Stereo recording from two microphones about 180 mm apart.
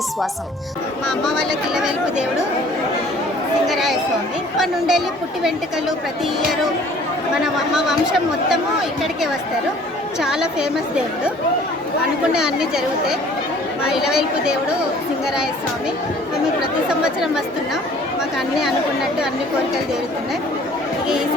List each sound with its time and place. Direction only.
1.0 s speech: centre (ahead or behind)
3.7 s a sound: centre (ahead or behind)
4.5 s speech: centre (ahead or behind)
7.4 s speech: 5° right (ahead or behind)
10.2 s speech: 5° right (ahead or behind)
12.3 s speech: 5° right (ahead or behind)
16.6 s speech: 5° right (ahead or behind)